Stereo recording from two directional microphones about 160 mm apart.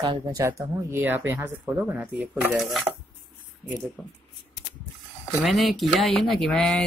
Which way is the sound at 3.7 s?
Centre (ahead or behind).